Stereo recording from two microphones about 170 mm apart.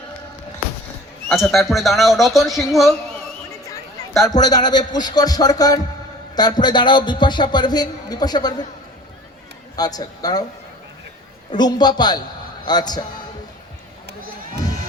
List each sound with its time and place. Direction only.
1.3 s speech: centre (ahead or behind)
4.4 s a man's voice: 25° left (ahead or behind)
9.7 s a man's voice: 20° left (ahead or behind)
11.5 s a man's voice: 25° left (ahead or behind)